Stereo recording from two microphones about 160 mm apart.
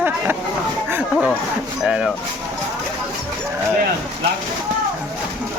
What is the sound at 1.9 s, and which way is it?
Speech, 5° right (ahead or behind).